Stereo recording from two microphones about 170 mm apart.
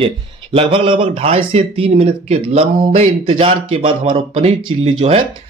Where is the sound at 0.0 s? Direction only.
30° right (ahead or behind).